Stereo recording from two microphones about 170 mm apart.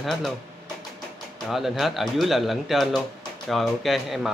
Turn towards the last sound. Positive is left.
turn(degrees=0)  # may be behind; listen again after turning